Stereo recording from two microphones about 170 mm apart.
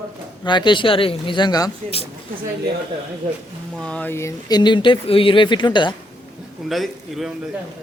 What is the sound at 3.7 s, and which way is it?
Speech, 5° left (ahead or behind).